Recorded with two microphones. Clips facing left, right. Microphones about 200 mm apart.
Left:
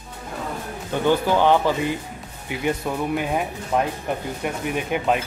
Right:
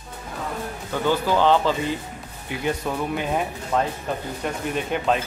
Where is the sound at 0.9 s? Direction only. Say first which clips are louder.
Left 2 dB; 15° left (ahead or behind).